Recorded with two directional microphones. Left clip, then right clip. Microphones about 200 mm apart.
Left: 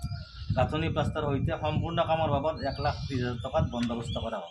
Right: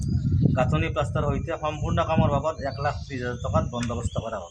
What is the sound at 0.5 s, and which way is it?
A man's voice, 25° right (ahead or behind).